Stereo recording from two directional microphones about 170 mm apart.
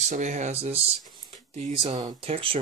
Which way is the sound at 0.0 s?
45° right (ahead or behind).